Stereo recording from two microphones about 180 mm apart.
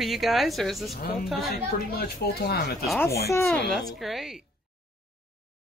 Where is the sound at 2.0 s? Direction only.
65° left (ahead or behind).